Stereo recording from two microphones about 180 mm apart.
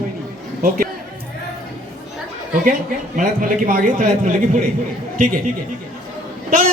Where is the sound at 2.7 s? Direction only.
45° right (ahead or behind).